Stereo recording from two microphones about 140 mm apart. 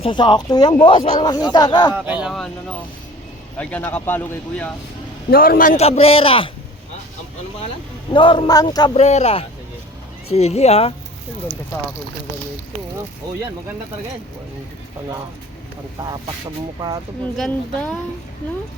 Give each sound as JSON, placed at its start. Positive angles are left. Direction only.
{"t": 0.0, "sound": "speech", "side_deg": 35}
{"t": 2.0, "sound": "speech", "side_deg": -10}
{"t": 3.6, "sound": "speech", "side_deg": 10}
{"t": 5.3, "sound": "a man's voice", "side_deg": 90}
{"t": 5.7, "sound": "a man's voice", "side_deg": 45}
{"t": 8.1, "sound": "speech", "side_deg": 35}
{"t": 9.0, "sound": "a man's voice", "side_deg": 50}
{"t": 16.0, "sound": "speech", "side_deg": -30}
{"t": 17.3, "sound": "speech", "side_deg": 5}